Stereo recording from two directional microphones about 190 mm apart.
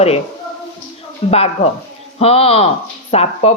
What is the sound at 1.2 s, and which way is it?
Speech, 30° left (ahead or behind).